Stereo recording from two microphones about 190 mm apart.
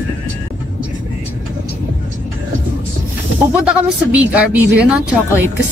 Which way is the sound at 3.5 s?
5° right (ahead or behind).